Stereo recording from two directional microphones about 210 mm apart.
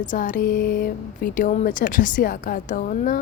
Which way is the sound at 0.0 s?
40° left (ahead or behind).